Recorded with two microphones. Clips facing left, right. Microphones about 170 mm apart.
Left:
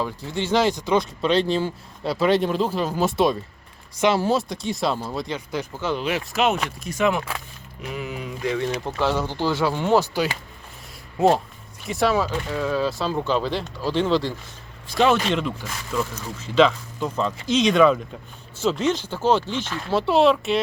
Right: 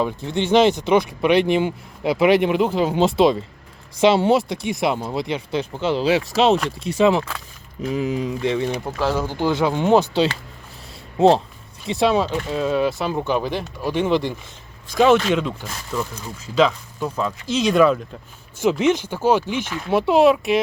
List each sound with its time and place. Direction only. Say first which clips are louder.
0.0 s speech: right 5 dB; 20° right (ahead or behind)
9.0 s speech: right 1 dB; 5° right (ahead or behind)
11.9 s speech: right 3 dB; 20° right (ahead or behind)
14.9 s speech: right 4 dB; 5° right (ahead or behind)
18.6 s speech: right 4 dB; 15° right (ahead or behind)